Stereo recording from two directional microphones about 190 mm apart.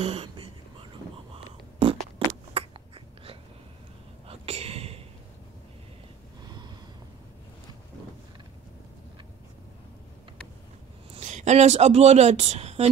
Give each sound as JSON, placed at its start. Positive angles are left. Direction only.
{"t": 0.0, "sound": "whispering", "side_deg": -30}
{"t": 1.3, "sound": "a sound", "side_deg": -30}
{"t": 11.1, "sound": "speech", "side_deg": -35}